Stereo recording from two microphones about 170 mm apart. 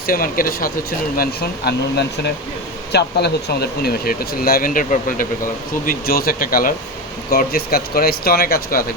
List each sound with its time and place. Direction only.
0.1 s speech: 55° left (ahead or behind)